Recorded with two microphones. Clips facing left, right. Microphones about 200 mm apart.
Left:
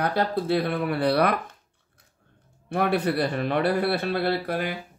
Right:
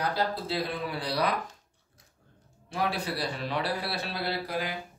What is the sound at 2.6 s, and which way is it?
A man's voice, 60° left (ahead or behind).